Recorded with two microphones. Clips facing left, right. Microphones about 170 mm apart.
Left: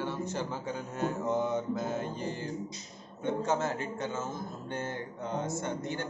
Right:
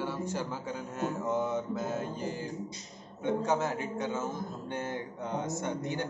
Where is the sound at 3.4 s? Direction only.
15° right (ahead or behind).